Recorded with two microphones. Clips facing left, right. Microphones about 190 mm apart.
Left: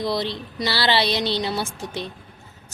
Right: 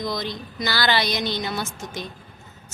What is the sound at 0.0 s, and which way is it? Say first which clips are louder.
A woman's voice: left 3 dB; 30° left (ahead or behind).